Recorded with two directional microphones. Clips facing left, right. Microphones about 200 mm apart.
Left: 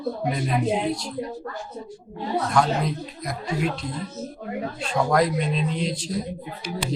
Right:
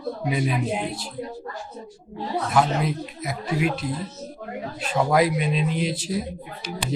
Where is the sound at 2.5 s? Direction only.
5° right (ahead or behind).